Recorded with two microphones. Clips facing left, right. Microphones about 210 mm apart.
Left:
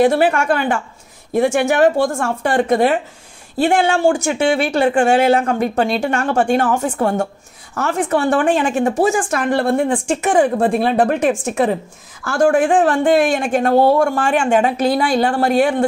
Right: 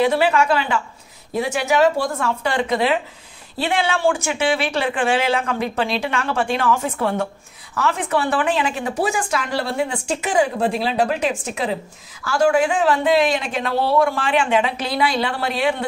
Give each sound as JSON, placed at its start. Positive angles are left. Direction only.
{"t": 0.0, "sound": "a woman's voice", "side_deg": 50}